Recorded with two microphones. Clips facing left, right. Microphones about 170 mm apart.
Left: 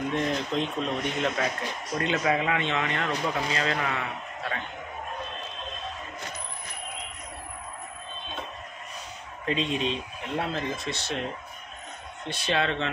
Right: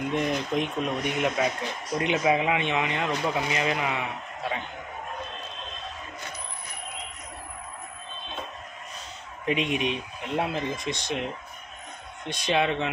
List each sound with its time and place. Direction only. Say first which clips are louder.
0.1 s speech: right 3 dB; 15° right (ahead or behind)
9.5 s speech: right 1 dB; 15° right (ahead or behind)
12.3 s speech: right 2 dB; 15° right (ahead or behind)